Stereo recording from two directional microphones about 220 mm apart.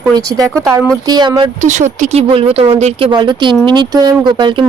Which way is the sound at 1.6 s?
35° right (ahead or behind).